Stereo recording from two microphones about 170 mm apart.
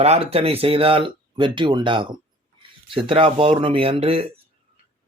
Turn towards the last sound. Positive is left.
turn(degrees=-35)  # may be behind; listen again after turning